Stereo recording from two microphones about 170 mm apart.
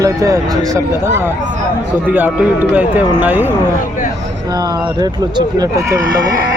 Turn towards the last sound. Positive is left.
turn(degrees=-20)  # may be behind; listen again after turning